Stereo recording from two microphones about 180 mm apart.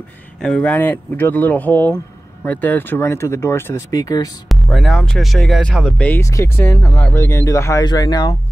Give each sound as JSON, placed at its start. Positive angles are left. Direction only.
{"t": 0.4, "sound": "speech", "side_deg": 5}
{"t": 4.5, "sound": "speech", "side_deg": 0}